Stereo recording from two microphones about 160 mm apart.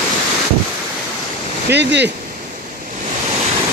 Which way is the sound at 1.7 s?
90° right.